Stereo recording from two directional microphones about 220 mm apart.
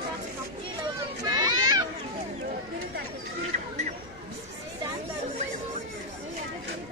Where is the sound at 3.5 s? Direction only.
35° right (ahead or behind).